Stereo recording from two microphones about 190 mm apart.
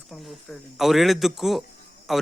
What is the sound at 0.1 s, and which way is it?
Speech, centre (ahead or behind).